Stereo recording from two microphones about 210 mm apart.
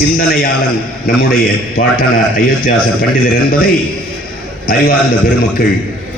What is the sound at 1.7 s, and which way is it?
A man's voice, 45° left (ahead or behind).